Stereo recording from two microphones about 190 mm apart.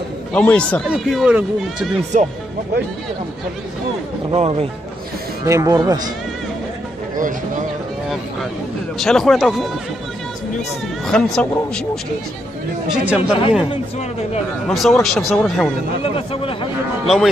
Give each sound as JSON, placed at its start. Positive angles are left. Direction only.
{"t": 0.3, "sound": "a man's voice", "side_deg": 5}
{"t": 2.1, "sound": "speech", "side_deg": -40}
{"t": 4.3, "sound": "speech", "side_deg": -30}
{"t": 5.4, "sound": "speech", "side_deg": -20}
{"t": 8.9, "sound": "speech", "side_deg": 0}
{"t": 11.1, "sound": "speech", "side_deg": 5}
{"t": 13.0, "sound": "speech", "side_deg": -5}
{"t": 13.7, "sound": "a man's voice", "side_deg": 35}
{"t": 14.7, "sound": "speech", "side_deg": 0}
{"t": 16.0, "sound": "speech", "side_deg": 30}
{"t": 17.0, "sound": "speech", "side_deg": 0}